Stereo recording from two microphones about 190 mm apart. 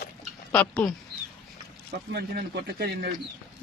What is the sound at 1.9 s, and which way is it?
Speech, 55° right (ahead or behind).